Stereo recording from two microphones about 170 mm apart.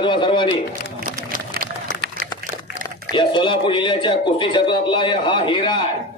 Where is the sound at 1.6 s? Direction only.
60° right (ahead or behind).